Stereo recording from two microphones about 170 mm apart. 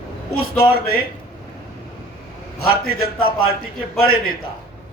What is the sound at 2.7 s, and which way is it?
A man's voice, 65° left (ahead or behind).